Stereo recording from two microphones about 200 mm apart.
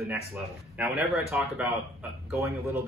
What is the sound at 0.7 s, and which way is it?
Speech, 5° right (ahead or behind).